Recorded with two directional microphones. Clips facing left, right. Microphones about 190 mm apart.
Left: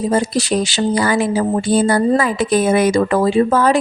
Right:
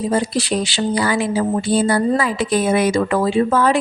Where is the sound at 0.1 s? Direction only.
45° left (ahead or behind).